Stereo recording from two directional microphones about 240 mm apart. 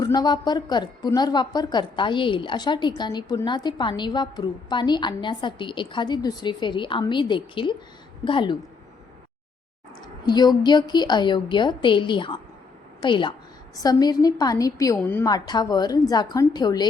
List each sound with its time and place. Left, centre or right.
0.0 s a woman's voice: centre
10.2 s a woman's voice: centre